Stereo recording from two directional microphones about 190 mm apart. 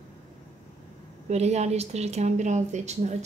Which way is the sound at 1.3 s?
35° right (ahead or behind).